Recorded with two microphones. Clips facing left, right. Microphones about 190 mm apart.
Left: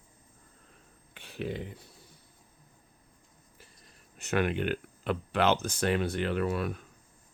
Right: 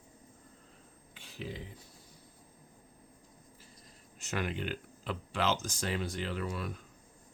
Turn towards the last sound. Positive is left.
turn(degrees=60)  # may be behind; listen again after turning